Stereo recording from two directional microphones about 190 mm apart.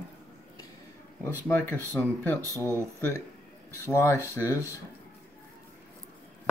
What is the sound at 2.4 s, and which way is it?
Speech, 15° right (ahead or behind).